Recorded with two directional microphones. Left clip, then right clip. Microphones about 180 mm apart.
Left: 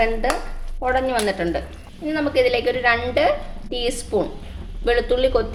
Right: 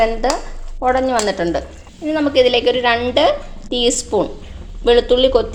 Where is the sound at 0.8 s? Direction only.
25° right (ahead or behind).